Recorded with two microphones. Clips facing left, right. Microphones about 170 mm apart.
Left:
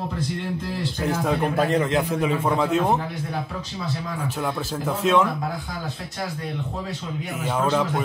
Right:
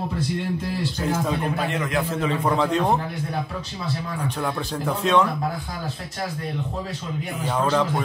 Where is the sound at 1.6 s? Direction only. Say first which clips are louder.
Left 4 dB; 35° left (ahead or behind).